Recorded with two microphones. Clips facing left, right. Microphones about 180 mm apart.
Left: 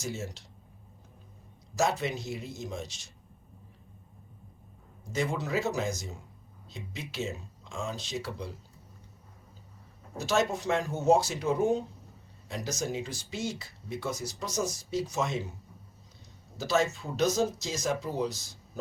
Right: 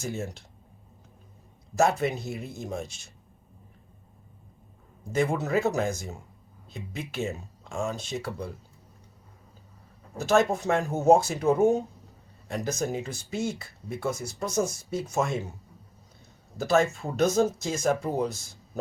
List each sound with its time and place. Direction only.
0.0 s speech: 55° right (ahead or behind)
1.7 s speech: 55° right (ahead or behind)
5.1 s speech: 50° right (ahead or behind)
10.2 s speech: 55° right (ahead or behind)
16.6 s speech: 55° right (ahead or behind)